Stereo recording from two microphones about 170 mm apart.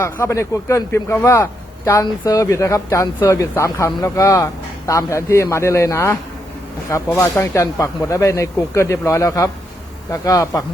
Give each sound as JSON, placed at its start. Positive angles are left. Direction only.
{"t": 0.0, "sound": "a man's voice", "side_deg": 15}